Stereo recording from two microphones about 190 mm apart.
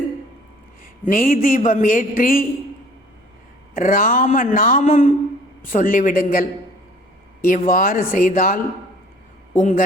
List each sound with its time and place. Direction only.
1.0 s speech: 45° left (ahead or behind)
3.8 s speech: 45° left (ahead or behind)
7.4 s a man's voice: 45° left (ahead or behind)